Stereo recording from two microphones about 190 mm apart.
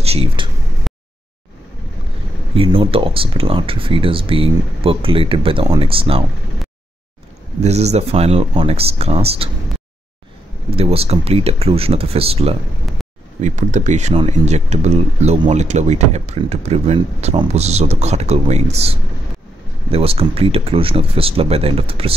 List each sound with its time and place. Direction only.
0.0 s speech: 30° right (ahead or behind)
0.9 s a sound: centre (ahead or behind)
2.5 s speech: 30° right (ahead or behind)
7.6 s speech: 35° right (ahead or behind)
10.8 s speech: 30° right (ahead or behind)